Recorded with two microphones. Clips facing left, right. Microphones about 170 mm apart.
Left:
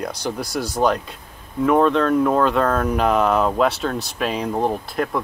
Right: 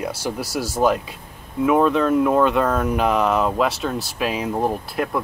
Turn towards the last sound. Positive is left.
turn(degrees=-5)  # may be behind; listen again after turning